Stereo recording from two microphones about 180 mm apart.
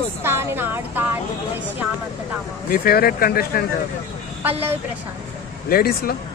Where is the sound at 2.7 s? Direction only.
55° left (ahead or behind).